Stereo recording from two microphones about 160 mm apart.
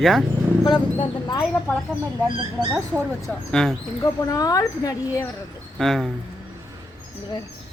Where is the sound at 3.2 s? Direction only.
5° left (ahead or behind).